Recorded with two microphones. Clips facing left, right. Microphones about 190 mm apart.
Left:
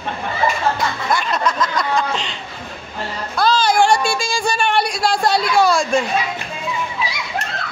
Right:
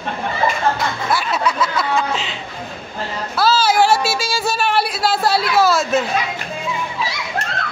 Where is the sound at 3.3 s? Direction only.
5° right (ahead or behind).